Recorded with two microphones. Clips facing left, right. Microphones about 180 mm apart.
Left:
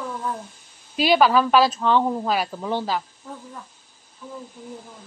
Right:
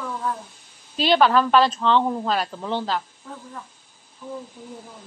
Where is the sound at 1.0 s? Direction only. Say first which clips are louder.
Even; 10° left (ahead or behind).